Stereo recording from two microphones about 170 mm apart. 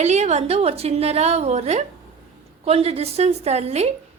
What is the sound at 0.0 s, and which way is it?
A woman's voice, 40° right (ahead or behind).